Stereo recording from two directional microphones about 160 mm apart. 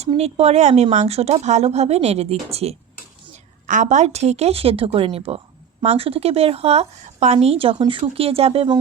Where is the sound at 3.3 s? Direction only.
50° right (ahead or behind).